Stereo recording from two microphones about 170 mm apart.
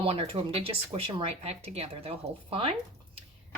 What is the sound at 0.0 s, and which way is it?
A woman's voice, 35° right (ahead or behind).